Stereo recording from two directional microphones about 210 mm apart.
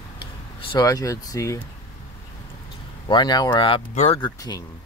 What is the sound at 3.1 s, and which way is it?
Speech, 20° left (ahead or behind).